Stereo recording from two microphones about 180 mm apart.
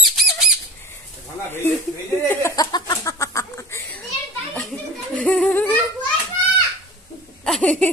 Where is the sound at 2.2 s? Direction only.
15° left (ahead or behind).